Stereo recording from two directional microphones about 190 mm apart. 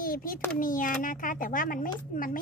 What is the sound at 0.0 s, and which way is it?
A child's voice, 50° left (ahead or behind).